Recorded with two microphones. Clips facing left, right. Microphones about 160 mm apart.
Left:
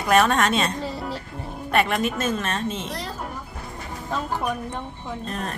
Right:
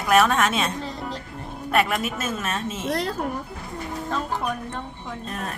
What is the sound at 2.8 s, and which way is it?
Speech, 60° right (ahead or behind).